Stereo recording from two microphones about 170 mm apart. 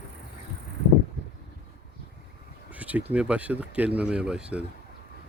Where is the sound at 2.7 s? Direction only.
10° right (ahead or behind).